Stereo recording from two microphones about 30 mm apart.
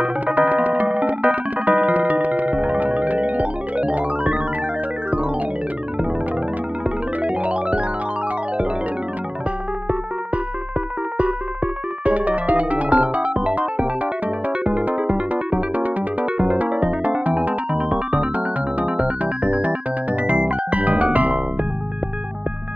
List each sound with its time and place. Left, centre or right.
0.3 s music: right
3.9 s music: right
7.2 s music: right
11.1 s music: right
15.0 s music: right
17.7 s music: right
19.0 s music: right